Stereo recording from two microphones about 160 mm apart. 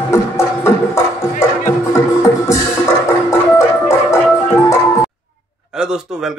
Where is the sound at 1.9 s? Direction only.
20° left (ahead or behind).